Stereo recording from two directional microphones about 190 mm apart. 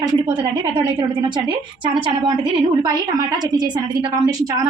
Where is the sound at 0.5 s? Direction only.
20° right (ahead or behind).